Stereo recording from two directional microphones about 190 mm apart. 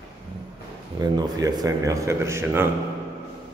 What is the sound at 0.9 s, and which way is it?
Speech, 20° right (ahead or behind).